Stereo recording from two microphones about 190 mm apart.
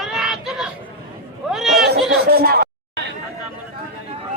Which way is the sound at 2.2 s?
55° right (ahead or behind).